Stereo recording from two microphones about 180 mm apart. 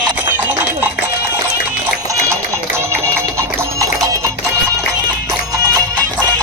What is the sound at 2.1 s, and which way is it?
Music, 15° right (ahead or behind).